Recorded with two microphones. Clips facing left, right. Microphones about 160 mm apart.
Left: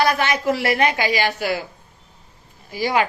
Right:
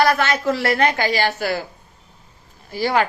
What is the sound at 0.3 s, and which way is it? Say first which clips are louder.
Speech: even; 15° left (ahead or behind).